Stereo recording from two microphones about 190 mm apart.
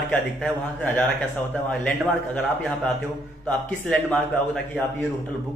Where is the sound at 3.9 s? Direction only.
5° left (ahead or behind).